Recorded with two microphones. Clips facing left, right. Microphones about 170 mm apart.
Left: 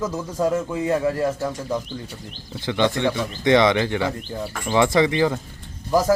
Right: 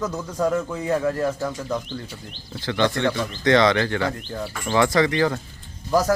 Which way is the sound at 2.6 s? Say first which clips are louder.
Left 1 dB; 15° left (ahead or behind).